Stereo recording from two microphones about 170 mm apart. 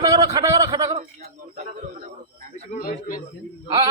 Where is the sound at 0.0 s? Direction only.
20° right (ahead or behind).